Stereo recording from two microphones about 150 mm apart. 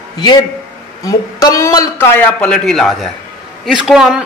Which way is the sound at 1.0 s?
25° left (ahead or behind).